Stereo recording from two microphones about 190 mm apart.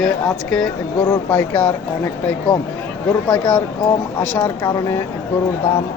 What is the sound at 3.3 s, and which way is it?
Speech, 5° left (ahead or behind).